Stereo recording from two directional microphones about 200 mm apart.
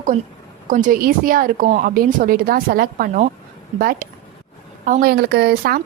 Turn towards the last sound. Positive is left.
turn(degrees=-50)  # may be behind; listen again after turning